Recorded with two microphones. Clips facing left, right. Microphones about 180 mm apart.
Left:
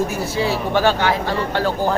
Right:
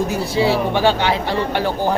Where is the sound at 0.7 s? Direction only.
15° right (ahead or behind).